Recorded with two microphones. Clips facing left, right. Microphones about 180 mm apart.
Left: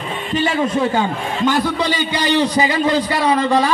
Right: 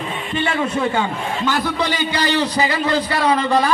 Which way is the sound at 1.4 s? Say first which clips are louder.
Left 4 dB; 15° left (ahead or behind).